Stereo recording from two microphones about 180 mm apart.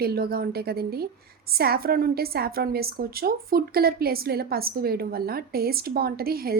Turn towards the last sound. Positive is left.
turn(degrees=-55)  # may be behind; listen again after turning